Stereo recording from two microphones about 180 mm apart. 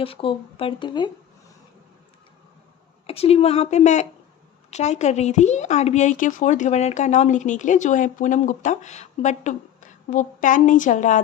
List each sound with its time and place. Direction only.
0.0 s speech: 30° left (ahead or behind)
3.1 s a woman's voice: 35° left (ahead or behind)